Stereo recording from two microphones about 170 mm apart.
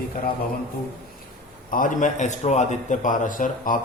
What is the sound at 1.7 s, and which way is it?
A man's voice, 50° left (ahead or behind).